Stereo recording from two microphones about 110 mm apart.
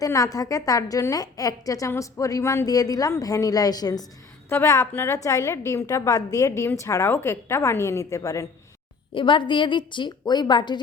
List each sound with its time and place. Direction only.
0.0 s a woman's voice: 30° left (ahead or behind)
4.4 s a woman's voice: 25° left (ahead or behind)
9.1 s a woman's voice: 50° left (ahead or behind)